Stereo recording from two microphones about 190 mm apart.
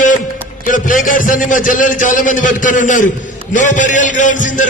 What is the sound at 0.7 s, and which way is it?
A man's voice, 45° left (ahead or behind).